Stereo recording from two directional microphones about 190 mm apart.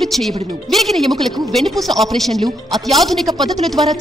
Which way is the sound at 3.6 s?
Centre (ahead or behind).